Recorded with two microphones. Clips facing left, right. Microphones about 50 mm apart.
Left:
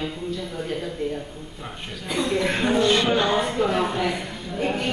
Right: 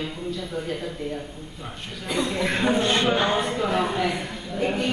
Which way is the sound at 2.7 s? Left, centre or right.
Right.